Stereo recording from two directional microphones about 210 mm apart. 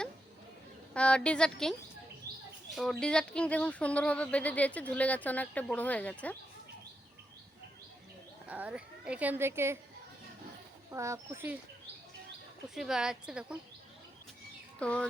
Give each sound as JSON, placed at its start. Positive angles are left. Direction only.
{"t": 0.9, "sound": "a woman's voice", "side_deg": 5}
{"t": 8.4, "sound": "a woman's voice", "side_deg": -5}
{"t": 10.9, "sound": "a woman's voice", "side_deg": -15}
{"t": 12.7, "sound": "a woman's voice", "side_deg": 0}
{"t": 14.8, "sound": "speech", "side_deg": 5}